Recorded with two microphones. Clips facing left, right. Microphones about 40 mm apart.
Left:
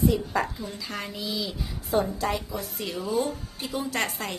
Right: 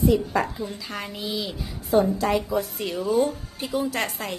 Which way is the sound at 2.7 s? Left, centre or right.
Centre.